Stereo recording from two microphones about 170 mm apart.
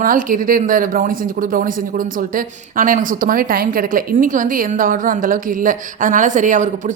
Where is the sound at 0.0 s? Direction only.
55° right (ahead or behind).